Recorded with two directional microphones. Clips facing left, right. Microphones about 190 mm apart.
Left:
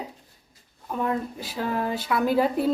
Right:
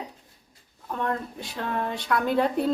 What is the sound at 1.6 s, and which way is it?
Speech, 5° left (ahead or behind).